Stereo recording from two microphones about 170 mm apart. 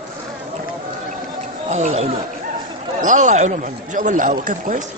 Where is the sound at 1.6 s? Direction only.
45° right (ahead or behind).